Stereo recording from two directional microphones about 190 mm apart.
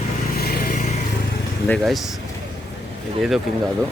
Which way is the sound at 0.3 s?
55° left (ahead or behind).